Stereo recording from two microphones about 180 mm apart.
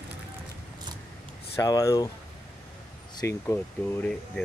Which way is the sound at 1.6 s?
20° left (ahead or behind).